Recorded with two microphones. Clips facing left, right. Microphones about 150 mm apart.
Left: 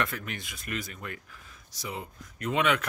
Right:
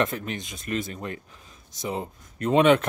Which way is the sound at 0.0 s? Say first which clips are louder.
Right 6 dB; 25° right (ahead or behind).